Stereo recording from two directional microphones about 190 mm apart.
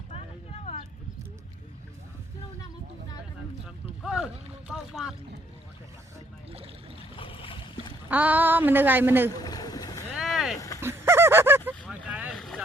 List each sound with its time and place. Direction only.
0.6 s a sound: 35° left (ahead or behind)
4.0 s boat: 5° right (ahead or behind)
7.2 s boat: 30° left (ahead or behind)
8.1 s a woman's voice: 10° right (ahead or behind)
9.3 s boat: 20° left (ahead or behind)
10.2 s boat: centre (ahead or behind)
10.8 s goose: 15° right (ahead or behind)
12.0 s boat: 5° right (ahead or behind)